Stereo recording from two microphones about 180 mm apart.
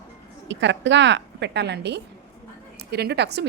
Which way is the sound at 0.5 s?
80° right.